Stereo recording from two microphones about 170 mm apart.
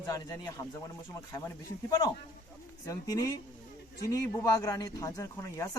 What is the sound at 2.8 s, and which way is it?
Speech, 20° left (ahead or behind).